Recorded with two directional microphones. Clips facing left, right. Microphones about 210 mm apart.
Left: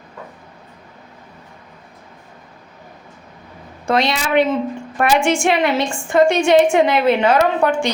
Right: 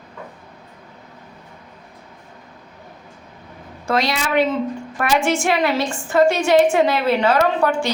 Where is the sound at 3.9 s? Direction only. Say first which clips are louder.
Left 3 dB; 25° left (ahead or behind).